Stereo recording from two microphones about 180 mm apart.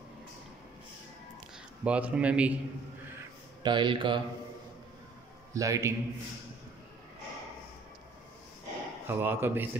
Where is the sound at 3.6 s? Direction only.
25° right (ahead or behind).